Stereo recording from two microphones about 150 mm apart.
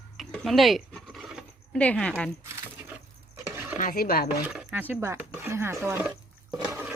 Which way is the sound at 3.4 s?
15° right (ahead or behind).